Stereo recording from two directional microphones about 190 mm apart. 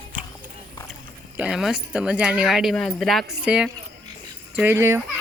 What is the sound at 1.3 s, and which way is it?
Speech, 5° right (ahead or behind).